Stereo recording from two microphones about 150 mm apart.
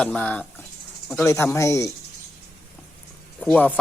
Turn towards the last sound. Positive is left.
turn(degrees=10)  # may be behind; listen again after turning